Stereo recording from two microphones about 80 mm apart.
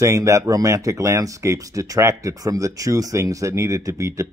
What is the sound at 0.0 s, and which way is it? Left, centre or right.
Speech, right.